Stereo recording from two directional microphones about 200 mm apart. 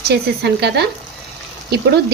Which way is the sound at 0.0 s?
55° right (ahead or behind).